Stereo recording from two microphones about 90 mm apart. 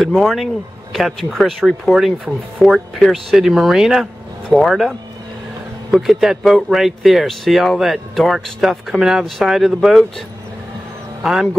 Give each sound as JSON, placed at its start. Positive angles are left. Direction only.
{"t": 0.0, "sound": "speech", "side_deg": 0}